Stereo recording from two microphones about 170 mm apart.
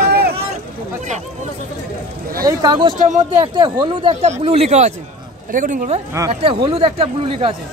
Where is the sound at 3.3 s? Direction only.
25° right (ahead or behind).